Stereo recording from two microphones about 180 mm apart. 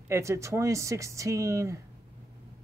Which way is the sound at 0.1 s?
15° right (ahead or behind).